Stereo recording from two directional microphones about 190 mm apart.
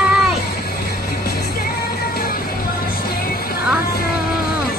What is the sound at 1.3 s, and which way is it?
Music, 55° left (ahead or behind).